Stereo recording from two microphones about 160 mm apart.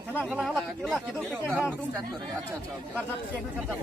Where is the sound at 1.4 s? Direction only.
10° right (ahead or behind).